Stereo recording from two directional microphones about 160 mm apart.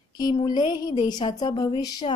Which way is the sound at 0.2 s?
25° left (ahead or behind).